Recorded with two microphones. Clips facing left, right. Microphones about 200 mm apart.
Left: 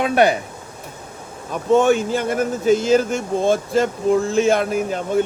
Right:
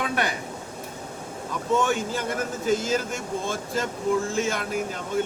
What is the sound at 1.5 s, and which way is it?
A man's voice, 65° left (ahead or behind).